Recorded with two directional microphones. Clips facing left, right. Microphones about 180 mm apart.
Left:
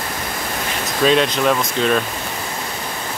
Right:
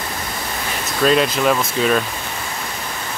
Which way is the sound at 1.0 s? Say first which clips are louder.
Even; 5° right (ahead or behind).